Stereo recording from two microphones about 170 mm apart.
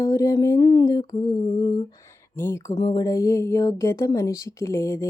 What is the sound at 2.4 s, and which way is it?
Speech, 15° left (ahead or behind).